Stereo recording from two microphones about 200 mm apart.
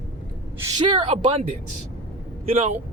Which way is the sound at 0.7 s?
25° right (ahead or behind).